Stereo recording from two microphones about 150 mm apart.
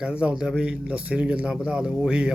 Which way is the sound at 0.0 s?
5° right (ahead or behind).